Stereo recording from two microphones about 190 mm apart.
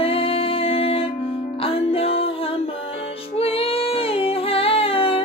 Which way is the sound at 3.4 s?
30° left (ahead or behind).